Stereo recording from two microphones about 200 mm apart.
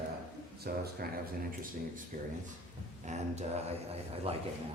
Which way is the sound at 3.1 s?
35° right (ahead or behind).